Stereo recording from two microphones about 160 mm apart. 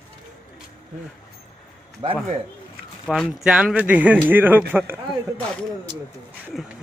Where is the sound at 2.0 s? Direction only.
30° right (ahead or behind).